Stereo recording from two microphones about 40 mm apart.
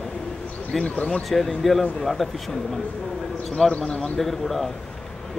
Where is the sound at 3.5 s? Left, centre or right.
Centre.